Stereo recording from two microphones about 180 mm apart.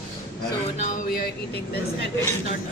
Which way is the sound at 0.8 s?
50° left (ahead or behind).